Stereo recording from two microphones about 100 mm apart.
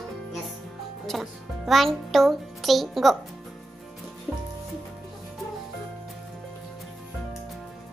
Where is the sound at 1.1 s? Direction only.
Centre (ahead or behind).